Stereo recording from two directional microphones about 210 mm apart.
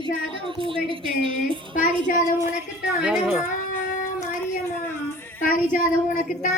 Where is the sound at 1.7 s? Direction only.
40° left (ahead or behind).